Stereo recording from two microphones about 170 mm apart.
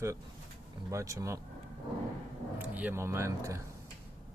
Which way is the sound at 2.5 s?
10° right (ahead or behind).